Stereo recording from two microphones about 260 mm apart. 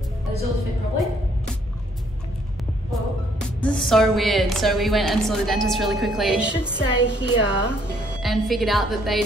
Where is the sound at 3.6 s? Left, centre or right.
Centre.